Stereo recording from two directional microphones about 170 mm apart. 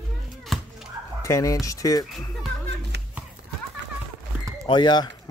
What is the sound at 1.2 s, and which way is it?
Speech, 20° left (ahead or behind).